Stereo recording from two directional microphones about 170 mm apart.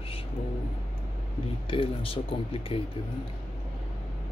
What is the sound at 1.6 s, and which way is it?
Speech, 30° left (ahead or behind).